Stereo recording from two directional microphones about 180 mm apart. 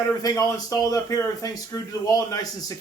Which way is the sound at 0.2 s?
20° left (ahead or behind).